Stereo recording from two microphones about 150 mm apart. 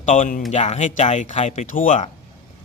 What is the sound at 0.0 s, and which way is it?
Speech, 55° left (ahead or behind).